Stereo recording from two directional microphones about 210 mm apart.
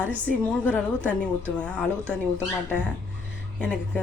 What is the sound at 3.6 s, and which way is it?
Speech, 5° left (ahead or behind).